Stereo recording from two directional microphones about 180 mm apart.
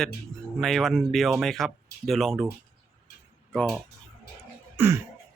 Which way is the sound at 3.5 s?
5° left (ahead or behind).